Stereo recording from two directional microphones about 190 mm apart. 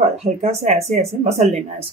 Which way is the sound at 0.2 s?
35° right (ahead or behind).